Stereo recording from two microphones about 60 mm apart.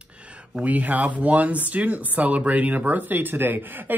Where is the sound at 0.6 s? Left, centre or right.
Right.